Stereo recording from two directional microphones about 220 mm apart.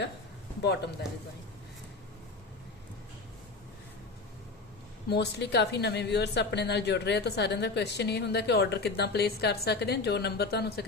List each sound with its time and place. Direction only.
5.0 s a woman's voice: 50° left (ahead or behind)